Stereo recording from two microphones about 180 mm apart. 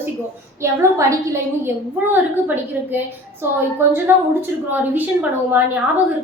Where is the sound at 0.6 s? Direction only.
15° right (ahead or behind).